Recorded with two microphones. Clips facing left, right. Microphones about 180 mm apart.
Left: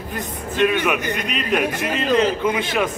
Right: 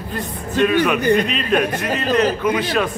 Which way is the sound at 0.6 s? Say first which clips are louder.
Right 2 dB; 15° left (ahead or behind).